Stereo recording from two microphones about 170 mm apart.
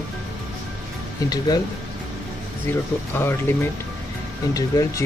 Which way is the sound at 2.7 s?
15° left (ahead or behind).